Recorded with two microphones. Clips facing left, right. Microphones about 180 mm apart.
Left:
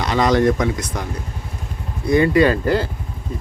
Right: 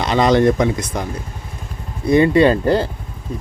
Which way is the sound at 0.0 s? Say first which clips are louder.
Right 2 dB; 25° right (ahead or behind).